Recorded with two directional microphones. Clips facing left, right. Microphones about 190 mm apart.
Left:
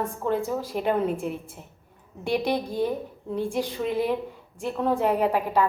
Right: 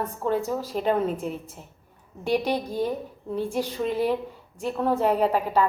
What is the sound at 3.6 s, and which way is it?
A woman's voice, 15° left (ahead or behind).